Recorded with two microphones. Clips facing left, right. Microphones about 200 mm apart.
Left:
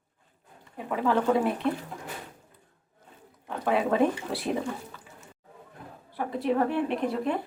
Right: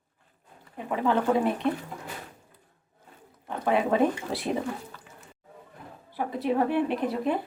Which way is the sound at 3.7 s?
Centre (ahead or behind).